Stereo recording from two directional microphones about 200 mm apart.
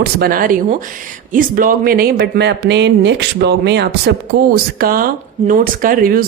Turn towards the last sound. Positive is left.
turn(degrees=-45)  # may be behind; listen again after turning